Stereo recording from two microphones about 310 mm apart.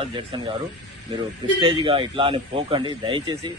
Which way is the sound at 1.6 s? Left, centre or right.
Centre.